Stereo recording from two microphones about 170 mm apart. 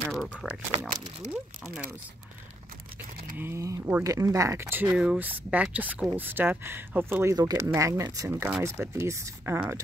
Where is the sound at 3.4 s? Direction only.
15° right (ahead or behind).